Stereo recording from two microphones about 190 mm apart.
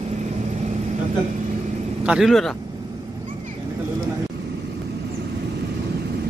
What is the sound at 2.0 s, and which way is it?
Speech, centre (ahead or behind).